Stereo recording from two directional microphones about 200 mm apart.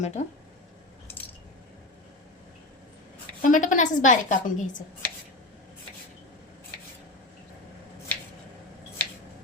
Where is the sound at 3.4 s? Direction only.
40° left (ahead or behind).